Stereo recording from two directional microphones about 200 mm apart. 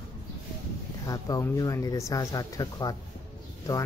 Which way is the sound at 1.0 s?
15° left (ahead or behind).